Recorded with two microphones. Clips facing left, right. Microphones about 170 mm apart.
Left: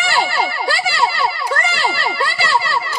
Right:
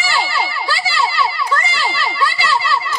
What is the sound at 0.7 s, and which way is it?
Children playing, 60° left (ahead or behind).